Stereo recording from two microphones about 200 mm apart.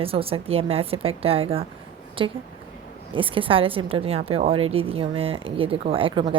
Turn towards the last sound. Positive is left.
turn(degrees=-25)  # may be behind; listen again after turning